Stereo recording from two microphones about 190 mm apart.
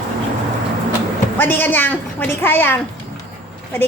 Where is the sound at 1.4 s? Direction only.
10° left (ahead or behind).